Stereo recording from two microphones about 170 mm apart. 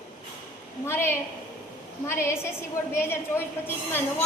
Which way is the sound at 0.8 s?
15° left (ahead or behind).